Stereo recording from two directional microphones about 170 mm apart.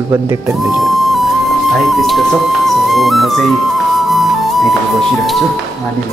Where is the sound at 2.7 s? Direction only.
Centre (ahead or behind).